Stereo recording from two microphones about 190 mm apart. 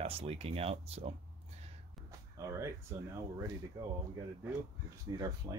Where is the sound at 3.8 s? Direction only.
20° right (ahead or behind).